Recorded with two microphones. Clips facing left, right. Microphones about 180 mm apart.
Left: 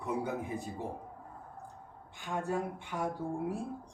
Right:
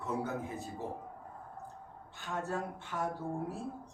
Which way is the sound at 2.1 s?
15° left (ahead or behind).